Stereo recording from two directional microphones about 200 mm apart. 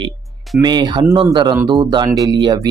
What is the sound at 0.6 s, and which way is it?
Speech, 20° right (ahead or behind).